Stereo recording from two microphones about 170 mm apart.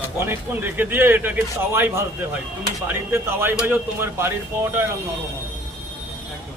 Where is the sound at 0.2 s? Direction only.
10° right (ahead or behind).